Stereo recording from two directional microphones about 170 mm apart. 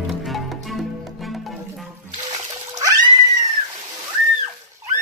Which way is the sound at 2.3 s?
25° right (ahead or behind).